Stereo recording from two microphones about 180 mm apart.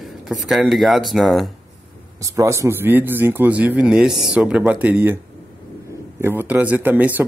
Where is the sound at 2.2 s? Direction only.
15° right (ahead or behind).